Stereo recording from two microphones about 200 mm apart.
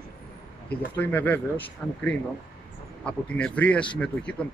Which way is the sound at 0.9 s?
10° left (ahead or behind).